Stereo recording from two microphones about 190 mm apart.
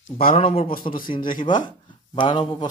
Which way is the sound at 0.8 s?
30° left (ahead or behind).